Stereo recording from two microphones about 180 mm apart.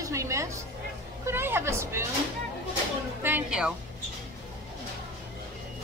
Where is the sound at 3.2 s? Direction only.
10° right (ahead or behind).